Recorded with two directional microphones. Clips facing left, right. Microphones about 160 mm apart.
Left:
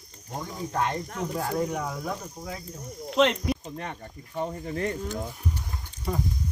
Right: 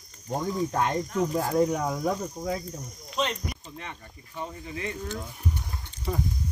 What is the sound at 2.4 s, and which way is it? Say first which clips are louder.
Speech: right 7 dB; 20° right (ahead or behind).